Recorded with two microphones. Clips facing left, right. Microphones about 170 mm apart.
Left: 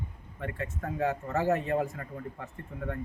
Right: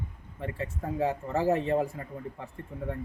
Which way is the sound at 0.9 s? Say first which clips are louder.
Right 1 dB; 30° right (ahead or behind).